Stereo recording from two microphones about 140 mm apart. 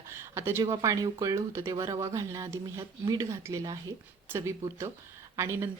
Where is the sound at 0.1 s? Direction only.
20° right (ahead or behind).